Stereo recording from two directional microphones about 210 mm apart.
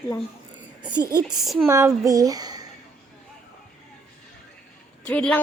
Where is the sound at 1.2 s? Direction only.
Centre (ahead or behind).